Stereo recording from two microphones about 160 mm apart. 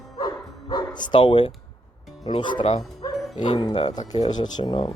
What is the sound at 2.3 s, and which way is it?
Speech, 30° left (ahead or behind).